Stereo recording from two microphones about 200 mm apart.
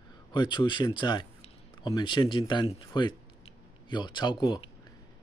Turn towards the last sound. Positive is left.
turn(degrees=20)  # may be behind; listen again after turning